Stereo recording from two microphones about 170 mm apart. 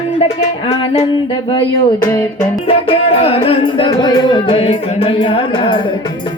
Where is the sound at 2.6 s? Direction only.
35° left (ahead or behind).